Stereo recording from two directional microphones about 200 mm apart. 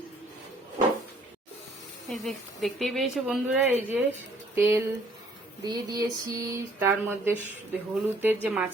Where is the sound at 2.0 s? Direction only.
Centre (ahead or behind).